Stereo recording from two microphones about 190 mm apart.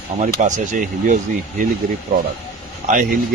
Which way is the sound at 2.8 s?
45° right (ahead or behind).